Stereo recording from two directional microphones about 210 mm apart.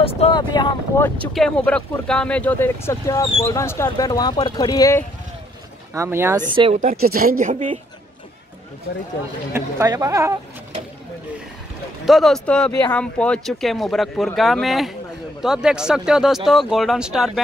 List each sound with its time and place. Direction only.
0.0 s speech: 25° left (ahead or behind)
1.3 s speech: 5° left (ahead or behind)
5.9 s speech: 10° right (ahead or behind)
6.5 s speech: 25° right (ahead or behind)
6.8 s speech: 45° right (ahead or behind)
9.5 s speech: 15° right (ahead or behind)
12.1 s speech: centre (ahead or behind)